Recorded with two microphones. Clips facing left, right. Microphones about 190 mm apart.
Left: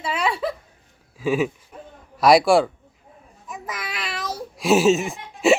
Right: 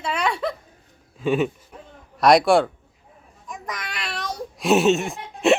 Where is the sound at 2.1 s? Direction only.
Centre (ahead or behind).